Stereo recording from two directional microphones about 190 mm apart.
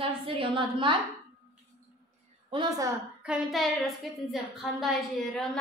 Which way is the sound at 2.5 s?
20° right (ahead or behind).